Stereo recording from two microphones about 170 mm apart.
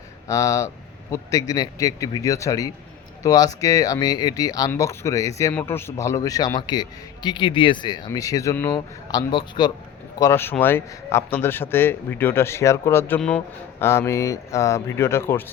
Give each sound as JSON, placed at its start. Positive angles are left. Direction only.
{"t": 0.3, "sound": "speech", "side_deg": 20}